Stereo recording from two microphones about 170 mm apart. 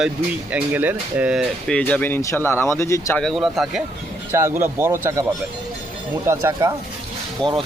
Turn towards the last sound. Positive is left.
turn(degrees=5)  # may be behind; listen again after turning